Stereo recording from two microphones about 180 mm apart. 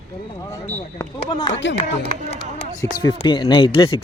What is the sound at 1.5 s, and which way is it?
Speech, 85° left.